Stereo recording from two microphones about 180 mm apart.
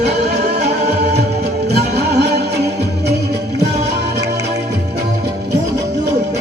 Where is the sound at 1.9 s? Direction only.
65° right (ahead or behind).